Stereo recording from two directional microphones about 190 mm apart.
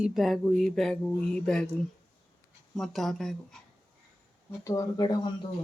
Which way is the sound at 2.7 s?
Centre (ahead or behind).